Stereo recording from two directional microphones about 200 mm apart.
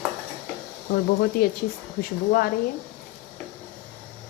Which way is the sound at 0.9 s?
55° left (ahead or behind).